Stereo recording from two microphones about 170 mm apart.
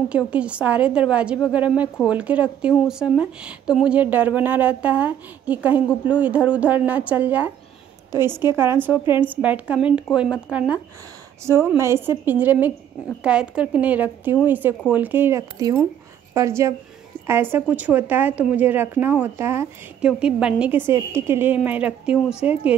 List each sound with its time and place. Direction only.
0.1 s speech: 5° right (ahead or behind)